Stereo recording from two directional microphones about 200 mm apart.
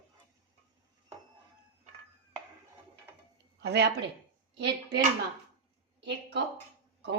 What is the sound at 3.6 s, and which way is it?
A woman's voice, 55° right (ahead or behind).